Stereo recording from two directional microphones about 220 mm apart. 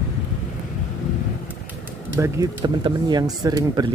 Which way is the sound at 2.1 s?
15° right (ahead or behind).